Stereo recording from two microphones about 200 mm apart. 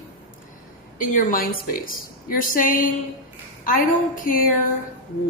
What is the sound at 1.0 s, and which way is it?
A woman's voice, 45° left (ahead or behind).